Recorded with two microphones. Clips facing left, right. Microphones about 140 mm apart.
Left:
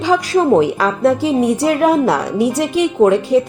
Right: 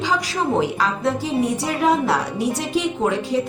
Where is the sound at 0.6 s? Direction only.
60° left (ahead or behind).